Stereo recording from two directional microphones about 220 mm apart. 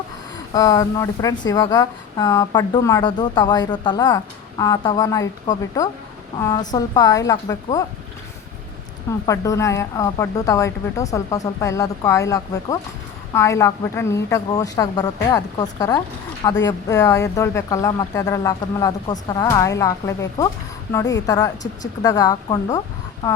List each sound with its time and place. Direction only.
0.5 s speech: 15° left (ahead or behind)
9.2 s speech: 15° left (ahead or behind)